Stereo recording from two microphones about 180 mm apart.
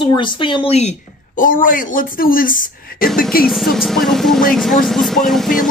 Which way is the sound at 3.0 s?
Centre (ahead or behind).